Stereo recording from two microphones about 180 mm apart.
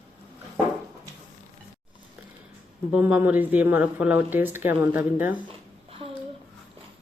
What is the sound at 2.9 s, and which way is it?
Speech, 5° right (ahead or behind).